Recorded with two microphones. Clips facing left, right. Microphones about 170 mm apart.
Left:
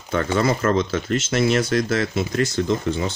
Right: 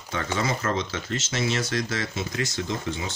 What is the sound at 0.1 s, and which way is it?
Speech, 55° left (ahead or behind).